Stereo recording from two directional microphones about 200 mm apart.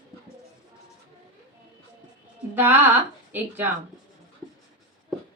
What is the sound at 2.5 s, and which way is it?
Speech, 10° right (ahead or behind).